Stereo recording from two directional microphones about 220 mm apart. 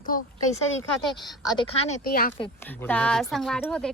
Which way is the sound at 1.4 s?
20° left (ahead or behind).